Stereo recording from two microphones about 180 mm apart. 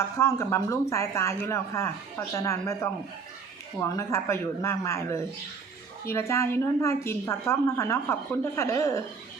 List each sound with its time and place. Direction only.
0.2 s a woman's voice: 15° left (ahead or behind)